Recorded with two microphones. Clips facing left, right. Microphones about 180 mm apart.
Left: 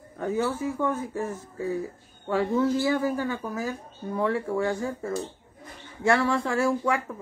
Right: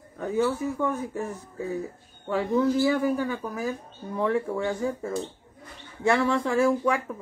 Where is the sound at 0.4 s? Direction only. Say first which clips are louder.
Right 3 dB; 10° right (ahead or behind).